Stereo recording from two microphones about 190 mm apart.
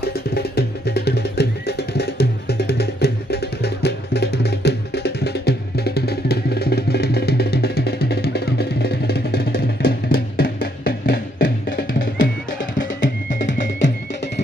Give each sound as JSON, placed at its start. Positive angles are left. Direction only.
{"t": 0.0, "sound": "music", "side_deg": 60}
{"t": 13.3, "sound": "music", "side_deg": 40}
{"t": 13.7, "sound": "music", "side_deg": 70}